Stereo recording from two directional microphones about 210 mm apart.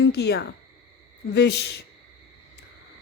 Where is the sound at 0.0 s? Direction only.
55° left (ahead or behind).